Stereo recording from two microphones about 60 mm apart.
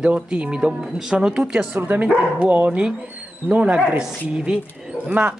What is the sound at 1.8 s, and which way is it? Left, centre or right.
A woman's voice, right.